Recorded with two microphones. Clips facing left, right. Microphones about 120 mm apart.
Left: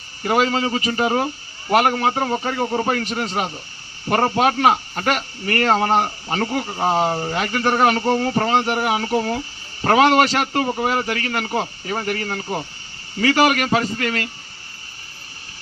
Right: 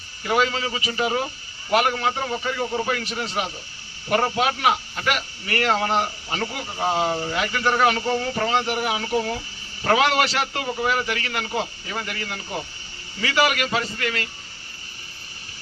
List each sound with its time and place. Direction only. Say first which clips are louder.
0.2 s speech: left 4 dB; 40° left (ahead or behind)